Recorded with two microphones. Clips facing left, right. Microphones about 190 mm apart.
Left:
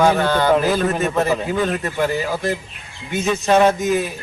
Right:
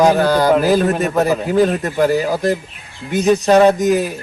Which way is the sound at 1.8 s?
40° right (ahead or behind).